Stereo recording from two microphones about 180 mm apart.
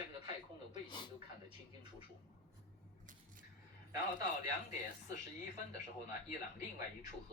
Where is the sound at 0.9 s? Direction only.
25° left (ahead or behind).